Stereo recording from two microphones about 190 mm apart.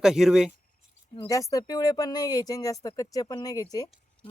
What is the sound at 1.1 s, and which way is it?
Speech, 15° left (ahead or behind).